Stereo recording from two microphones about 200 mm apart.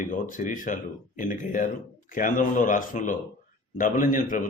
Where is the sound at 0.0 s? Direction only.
40° left (ahead or behind).